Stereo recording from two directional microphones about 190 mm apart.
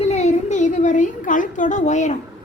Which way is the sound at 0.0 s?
35° left (ahead or behind).